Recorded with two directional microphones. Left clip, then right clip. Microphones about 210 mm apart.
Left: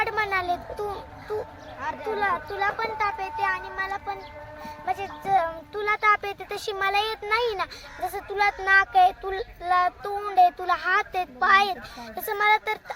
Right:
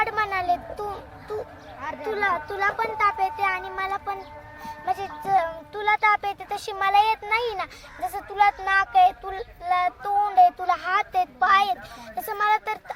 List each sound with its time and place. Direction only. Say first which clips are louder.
0.0 s a sound: right 1 dB; centre (ahead or behind)
2.1 s a child's voice: right 2 dB; 35° right (ahead or behind)
4.9 s music: right 1 dB; 20° right (ahead or behind)
5.7 s speech: right 1 dB; centre (ahead or behind)